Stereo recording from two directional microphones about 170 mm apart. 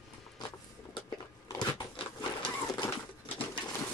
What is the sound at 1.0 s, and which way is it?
Biting, 25° left (ahead or behind).